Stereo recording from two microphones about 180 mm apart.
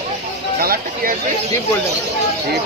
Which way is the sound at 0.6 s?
55° right (ahead or behind).